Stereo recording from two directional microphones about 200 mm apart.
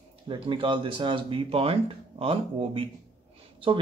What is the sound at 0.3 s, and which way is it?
Speech, 25° right (ahead or behind).